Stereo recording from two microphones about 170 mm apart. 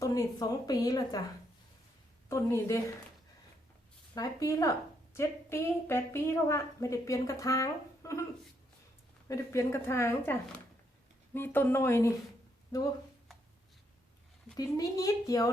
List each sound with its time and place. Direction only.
0.0 s a woman's voice: 20° left (ahead or behind)
2.3 s a woman's voice: 15° left (ahead or behind)
4.1 s a woman's voice: 20° left (ahead or behind)
9.3 s a woman's voice: 15° left (ahead or behind)
11.3 s a woman's voice: 10° left (ahead or behind)
14.5 s a woman's voice: 20° left (ahead or behind)